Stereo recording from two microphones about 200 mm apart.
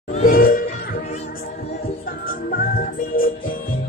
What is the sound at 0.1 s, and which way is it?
Music, 45° left (ahead or behind).